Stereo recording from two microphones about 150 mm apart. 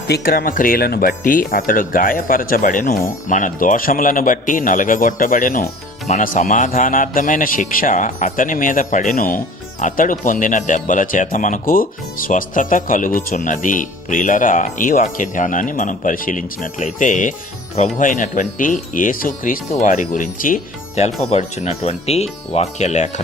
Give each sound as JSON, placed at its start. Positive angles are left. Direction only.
{"t": 0.1, "sound": "a man's voice", "side_deg": 85}
{"t": 21.2, "sound": "speech", "side_deg": 45}